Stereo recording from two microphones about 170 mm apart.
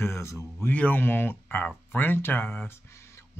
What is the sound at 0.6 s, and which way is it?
Speech, 10° left (ahead or behind).